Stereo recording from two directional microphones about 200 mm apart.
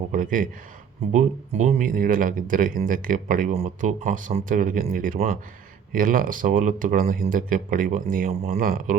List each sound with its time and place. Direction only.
0.1 s speech: 40° right (ahead or behind)